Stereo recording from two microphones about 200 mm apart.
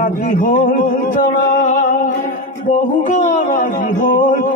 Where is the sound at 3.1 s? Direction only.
40° left (ahead or behind).